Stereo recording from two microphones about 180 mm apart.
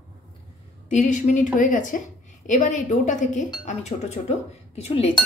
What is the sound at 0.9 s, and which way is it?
A woman's voice, 40° left (ahead or behind).